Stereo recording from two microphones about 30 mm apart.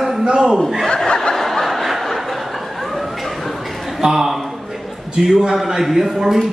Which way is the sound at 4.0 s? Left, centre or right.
Centre.